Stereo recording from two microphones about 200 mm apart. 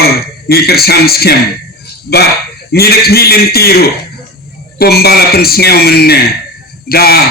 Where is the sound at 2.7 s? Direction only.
50° left (ahead or behind).